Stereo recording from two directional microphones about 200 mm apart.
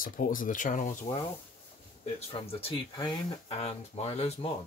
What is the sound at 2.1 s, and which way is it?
Speech, 25° left (ahead or behind).